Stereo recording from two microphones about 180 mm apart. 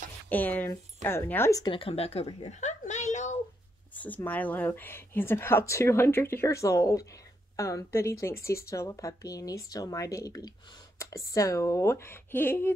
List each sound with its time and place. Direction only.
0.3 s speech: 10° left (ahead or behind); by 2.7 s 35° left (ahead or behind)
2.8 s a sound: 40° left (ahead or behind)
3.9 s speech: 10° left (ahead or behind)